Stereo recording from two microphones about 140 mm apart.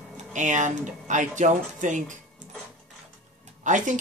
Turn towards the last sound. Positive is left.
turn(degrees=-65)  # may be behind; listen again after turning